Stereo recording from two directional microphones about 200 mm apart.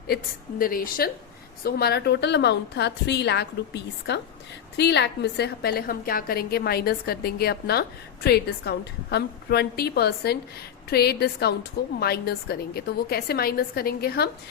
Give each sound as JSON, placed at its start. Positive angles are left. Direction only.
{"t": 0.6, "sound": "a woman's voice", "side_deg": 45}